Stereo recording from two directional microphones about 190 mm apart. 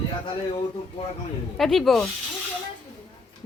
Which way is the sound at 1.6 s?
Centre (ahead or behind).